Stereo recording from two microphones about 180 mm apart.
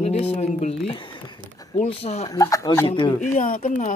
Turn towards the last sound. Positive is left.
turn(degrees=45)  # may be behind; listen again after turning